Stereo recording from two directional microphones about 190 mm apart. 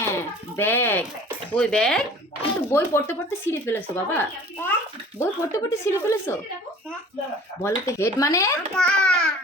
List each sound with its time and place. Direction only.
0.1 s a sound: 10° left (ahead or behind)
1.5 s speech: 5° left (ahead or behind)
7.6 s speech: 15° left (ahead or behind)
8.7 s speech: 5° left (ahead or behind)